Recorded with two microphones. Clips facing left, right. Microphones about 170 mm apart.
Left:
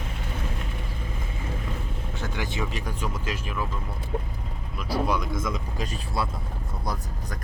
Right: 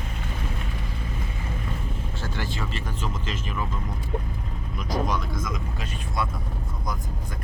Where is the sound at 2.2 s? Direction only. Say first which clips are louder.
Left 2 dB; 20° left (ahead or behind).